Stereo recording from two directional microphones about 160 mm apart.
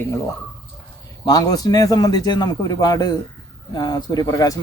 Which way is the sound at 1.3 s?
25° left (ahead or behind).